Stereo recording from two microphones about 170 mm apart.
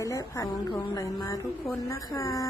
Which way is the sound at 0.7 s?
20° left (ahead or behind).